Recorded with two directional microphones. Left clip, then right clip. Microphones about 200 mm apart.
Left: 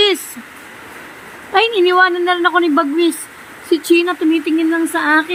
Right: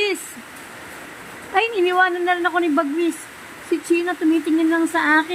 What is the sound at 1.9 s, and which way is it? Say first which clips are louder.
Speech: left 5 dB; 15° left (ahead or behind).